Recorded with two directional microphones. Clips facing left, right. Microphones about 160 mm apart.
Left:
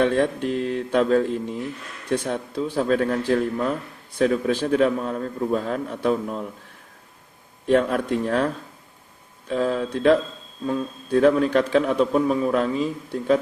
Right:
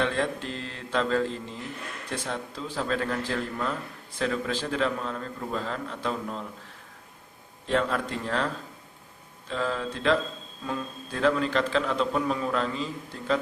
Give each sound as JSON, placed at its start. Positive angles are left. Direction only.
{"t": 0.0, "sound": "mantra", "side_deg": 55}
{"t": 2.2, "sound": "a man's voice", "side_deg": 50}
{"t": 7.7, "sound": "a man's voice", "side_deg": 50}
{"t": 9.5, "sound": "a man's voice", "side_deg": 45}